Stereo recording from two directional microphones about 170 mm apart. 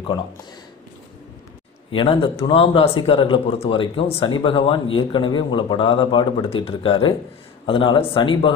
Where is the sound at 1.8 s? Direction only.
30° left (ahead or behind).